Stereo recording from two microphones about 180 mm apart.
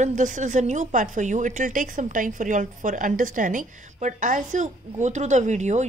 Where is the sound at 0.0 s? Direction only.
45° right (ahead or behind).